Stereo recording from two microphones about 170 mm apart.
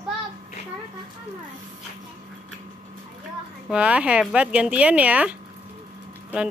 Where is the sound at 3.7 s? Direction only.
10° right (ahead or behind).